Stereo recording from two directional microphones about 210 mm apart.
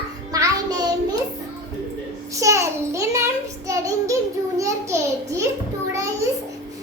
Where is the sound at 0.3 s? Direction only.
15° right (ahead or behind).